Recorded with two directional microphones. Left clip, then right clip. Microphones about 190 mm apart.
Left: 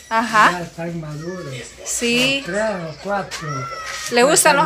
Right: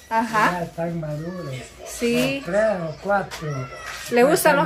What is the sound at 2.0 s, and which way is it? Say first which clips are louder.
Speech: left 4 dB; 5° right (ahead or behind).